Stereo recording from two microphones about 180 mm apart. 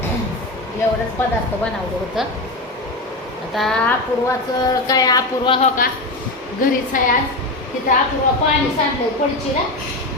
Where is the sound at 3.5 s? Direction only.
Centre (ahead or behind).